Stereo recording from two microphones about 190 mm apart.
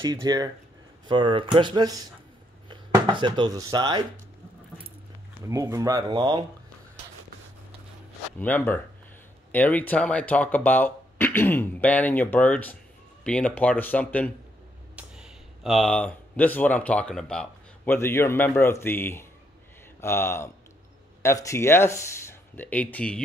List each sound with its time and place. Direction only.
0.0 s speech: 20° right (ahead or behind)
5.5 s speech: 15° right (ahead or behind)
8.4 s speech: 10° left (ahead or behind)
15.0 s speech: 5° right (ahead or behind)